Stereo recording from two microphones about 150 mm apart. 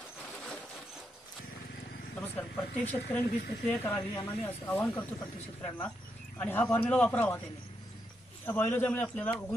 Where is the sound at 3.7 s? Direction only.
10° left (ahead or behind).